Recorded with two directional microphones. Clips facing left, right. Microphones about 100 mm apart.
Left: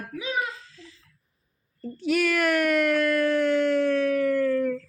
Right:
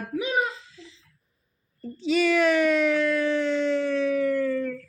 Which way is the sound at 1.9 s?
5° left (ahead or behind).